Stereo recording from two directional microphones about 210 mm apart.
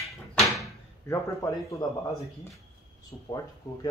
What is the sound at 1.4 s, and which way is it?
Speech, 20° left (ahead or behind).